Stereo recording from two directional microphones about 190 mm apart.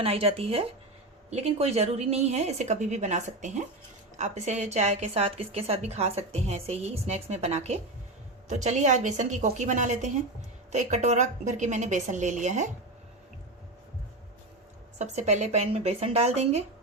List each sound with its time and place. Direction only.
0.0 s a woman's voice: 30° right (ahead or behind)
14.9 s a woman's voice: 35° right (ahead or behind)